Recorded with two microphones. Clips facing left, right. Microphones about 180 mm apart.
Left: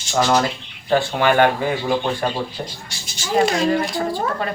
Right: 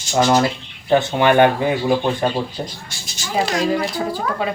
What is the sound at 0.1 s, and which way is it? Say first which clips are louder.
Speech: right 2 dB; 20° right (ahead or behind).